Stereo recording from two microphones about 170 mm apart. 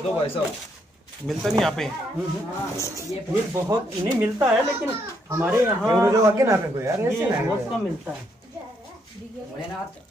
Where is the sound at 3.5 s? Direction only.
15° right (ahead or behind).